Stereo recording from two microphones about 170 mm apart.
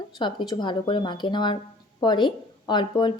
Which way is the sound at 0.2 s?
25° left (ahead or behind).